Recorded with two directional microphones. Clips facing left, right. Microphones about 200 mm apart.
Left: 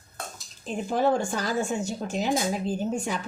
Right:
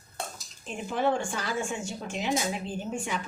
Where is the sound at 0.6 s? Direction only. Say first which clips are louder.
Left 4 dB; 40° left (ahead or behind).